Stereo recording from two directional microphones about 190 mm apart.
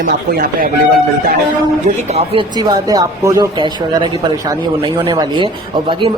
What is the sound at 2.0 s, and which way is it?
Speech, 30° right (ahead or behind).